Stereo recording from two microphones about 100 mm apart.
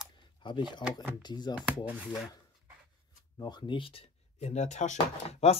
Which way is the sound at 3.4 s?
50° left (ahead or behind).